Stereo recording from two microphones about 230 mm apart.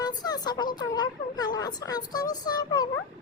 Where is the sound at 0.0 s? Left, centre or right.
Centre.